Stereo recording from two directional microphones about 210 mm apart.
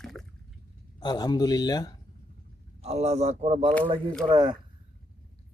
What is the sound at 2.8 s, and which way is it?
Speech, 30° right (ahead or behind).